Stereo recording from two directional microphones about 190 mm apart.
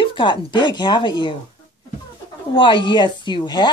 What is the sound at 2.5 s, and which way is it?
Speech, 25° left (ahead or behind).